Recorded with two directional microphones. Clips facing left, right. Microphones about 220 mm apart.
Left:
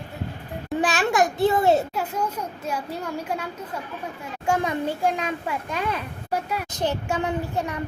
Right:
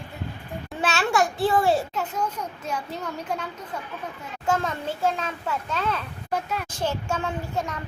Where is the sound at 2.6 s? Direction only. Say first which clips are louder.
Left 2 dB; 10° left (ahead or behind).